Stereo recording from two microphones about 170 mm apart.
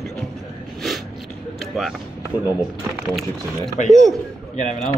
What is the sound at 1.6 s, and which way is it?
Vehicle, centre (ahead or behind).